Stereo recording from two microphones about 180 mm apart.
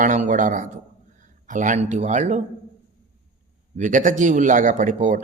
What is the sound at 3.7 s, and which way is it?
A man's voice, 45° right (ahead or behind).